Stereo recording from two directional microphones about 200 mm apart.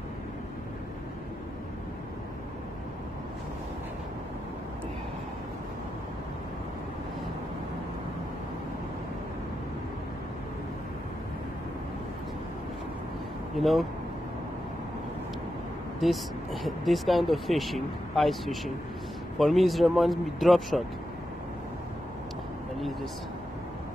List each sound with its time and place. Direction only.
13.6 s speech: centre (ahead or behind)
16.0 s speech: centre (ahead or behind)